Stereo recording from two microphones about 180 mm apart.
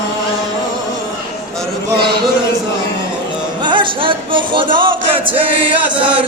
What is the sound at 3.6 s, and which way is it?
Speech, 25° right (ahead or behind).